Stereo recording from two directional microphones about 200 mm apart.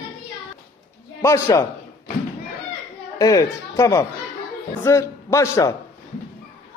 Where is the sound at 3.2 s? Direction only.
15° left (ahead or behind).